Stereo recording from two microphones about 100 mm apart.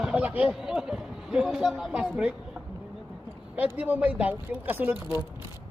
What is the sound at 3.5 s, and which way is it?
Speech, 15° right (ahead or behind).